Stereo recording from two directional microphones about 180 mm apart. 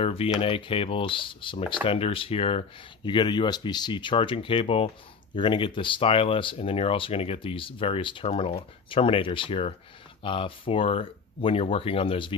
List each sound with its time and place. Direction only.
0.0 s speech: 30° left (ahead or behind)